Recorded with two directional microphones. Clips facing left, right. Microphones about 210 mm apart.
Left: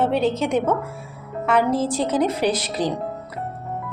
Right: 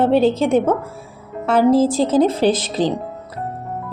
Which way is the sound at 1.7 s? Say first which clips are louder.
Right 7 dB; 90° right.